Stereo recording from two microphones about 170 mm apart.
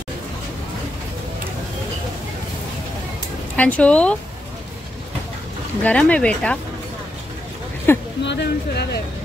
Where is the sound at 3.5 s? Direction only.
10° left (ahead or behind).